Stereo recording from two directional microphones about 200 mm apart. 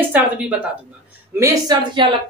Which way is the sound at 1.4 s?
20° right (ahead or behind).